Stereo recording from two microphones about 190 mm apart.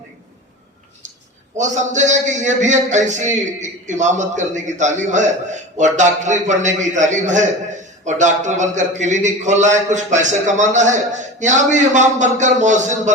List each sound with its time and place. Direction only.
1.5 s a man's voice: 40° right (ahead or behind)